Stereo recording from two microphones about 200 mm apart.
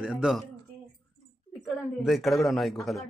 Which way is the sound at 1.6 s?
Centre (ahead or behind).